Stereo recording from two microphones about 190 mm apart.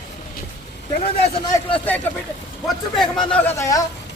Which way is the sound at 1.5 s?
15° left (ahead or behind).